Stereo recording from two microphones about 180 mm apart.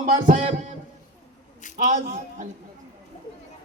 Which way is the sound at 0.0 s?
45° right (ahead or behind).